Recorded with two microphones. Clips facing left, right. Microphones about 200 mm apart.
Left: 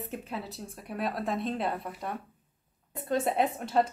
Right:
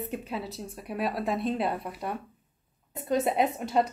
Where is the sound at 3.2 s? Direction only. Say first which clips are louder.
Right 2 dB; 15° right (ahead or behind).